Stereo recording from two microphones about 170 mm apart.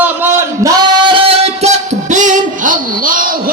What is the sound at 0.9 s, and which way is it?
Music, 30° right (ahead or behind).